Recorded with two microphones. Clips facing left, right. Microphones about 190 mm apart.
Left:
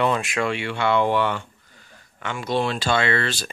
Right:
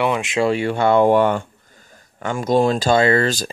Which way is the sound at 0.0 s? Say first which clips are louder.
Right 2 dB; 15° right (ahead or behind).